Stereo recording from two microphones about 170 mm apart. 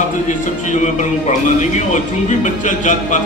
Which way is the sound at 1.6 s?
45° left (ahead or behind).